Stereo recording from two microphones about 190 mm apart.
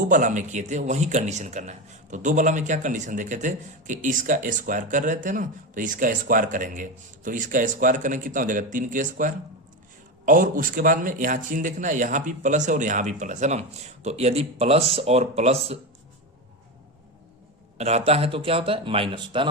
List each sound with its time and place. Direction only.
0.1 s a man's voice: 40° right (ahead or behind)
17.7 s speech: 35° right (ahead or behind)